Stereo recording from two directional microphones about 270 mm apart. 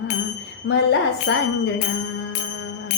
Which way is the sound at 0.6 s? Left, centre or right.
Left.